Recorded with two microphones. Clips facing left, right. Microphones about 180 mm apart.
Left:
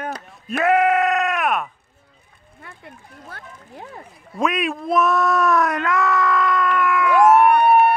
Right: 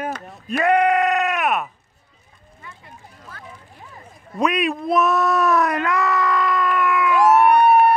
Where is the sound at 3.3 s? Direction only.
65° left (ahead or behind).